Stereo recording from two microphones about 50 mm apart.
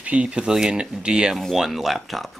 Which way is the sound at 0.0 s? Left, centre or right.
Right.